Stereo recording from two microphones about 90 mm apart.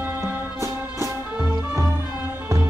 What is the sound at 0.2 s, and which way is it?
Music, 25° right (ahead or behind).